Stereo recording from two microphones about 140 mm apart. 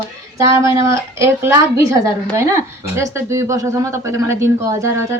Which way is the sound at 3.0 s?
20° right (ahead or behind).